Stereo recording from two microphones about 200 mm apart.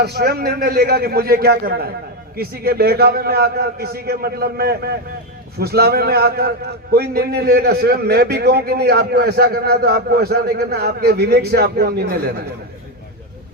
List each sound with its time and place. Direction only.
0.0 s a man's voice: 55° right (ahead or behind)